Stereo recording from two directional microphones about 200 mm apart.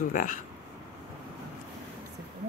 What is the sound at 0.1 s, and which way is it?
Speech, 45° left (ahead or behind).